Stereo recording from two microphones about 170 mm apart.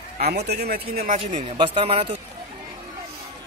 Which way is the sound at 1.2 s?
35° right (ahead or behind).